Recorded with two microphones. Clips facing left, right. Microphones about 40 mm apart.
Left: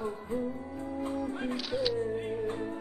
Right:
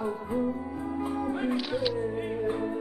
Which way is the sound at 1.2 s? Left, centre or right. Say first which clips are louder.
Right 5 dB; centre.